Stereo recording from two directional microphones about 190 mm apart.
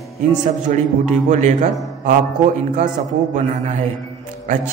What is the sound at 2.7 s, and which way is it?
A man's voice, 40° right (ahead or behind).